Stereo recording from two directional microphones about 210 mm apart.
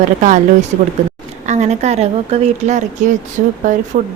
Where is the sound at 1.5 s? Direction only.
35° right (ahead or behind).